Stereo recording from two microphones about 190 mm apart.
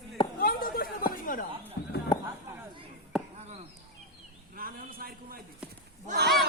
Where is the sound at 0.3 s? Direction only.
50° left (ahead or behind).